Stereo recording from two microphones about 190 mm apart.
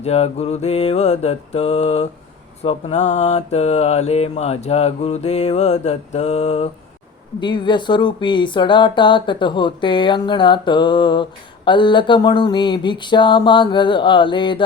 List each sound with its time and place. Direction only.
0.0 s mantra: 35° left (ahead or behind)
7.3 s speech: 25° left (ahead or behind)